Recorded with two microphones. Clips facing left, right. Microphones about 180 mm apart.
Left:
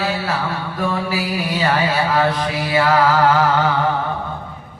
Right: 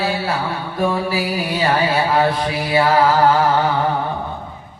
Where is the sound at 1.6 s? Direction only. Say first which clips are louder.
Right 1 dB; 35° right (ahead or behind).